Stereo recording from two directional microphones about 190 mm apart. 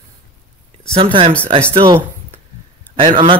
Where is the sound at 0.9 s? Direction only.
30° right (ahead or behind).